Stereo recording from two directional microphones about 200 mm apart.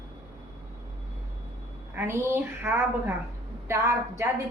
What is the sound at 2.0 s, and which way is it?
A woman's voice, 15° right (ahead or behind).